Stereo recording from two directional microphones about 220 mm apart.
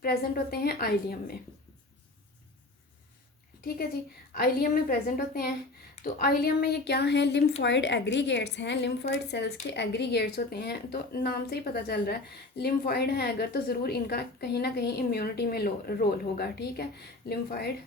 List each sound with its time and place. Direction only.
0.0 s a woman's voice: 45° left (ahead or behind)
4.4 s a woman's voice: 40° left (ahead or behind)